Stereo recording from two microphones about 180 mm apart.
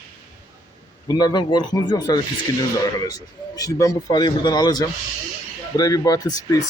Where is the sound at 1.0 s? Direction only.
20° left (ahead or behind).